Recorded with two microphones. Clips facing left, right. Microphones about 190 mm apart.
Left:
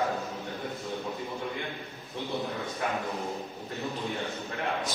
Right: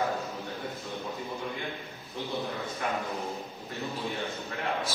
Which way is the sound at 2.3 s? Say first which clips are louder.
Left 1 dB; centre (ahead or behind).